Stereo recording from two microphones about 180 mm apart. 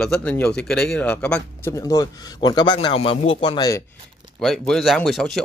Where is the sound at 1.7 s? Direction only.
20° left (ahead or behind).